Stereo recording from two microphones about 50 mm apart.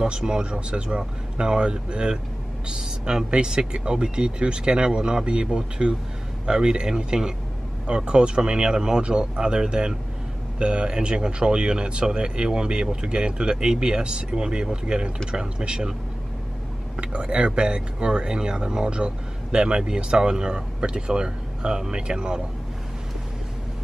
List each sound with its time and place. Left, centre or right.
0.0 s speech: centre
16.9 s speech: right